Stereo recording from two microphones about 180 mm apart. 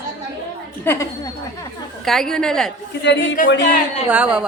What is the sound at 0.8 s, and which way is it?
Speech, 15° left (ahead or behind).